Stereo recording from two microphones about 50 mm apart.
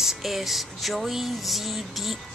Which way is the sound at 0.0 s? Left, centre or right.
Centre.